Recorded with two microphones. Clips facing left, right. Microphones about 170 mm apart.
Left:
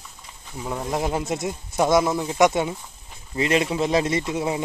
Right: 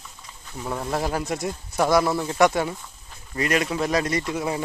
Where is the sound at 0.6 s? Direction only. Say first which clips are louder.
Even; centre (ahead or behind).